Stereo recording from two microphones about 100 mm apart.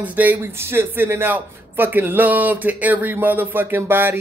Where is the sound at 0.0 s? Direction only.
15° right (ahead or behind).